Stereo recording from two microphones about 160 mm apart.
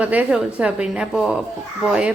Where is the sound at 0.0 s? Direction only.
10° right (ahead or behind).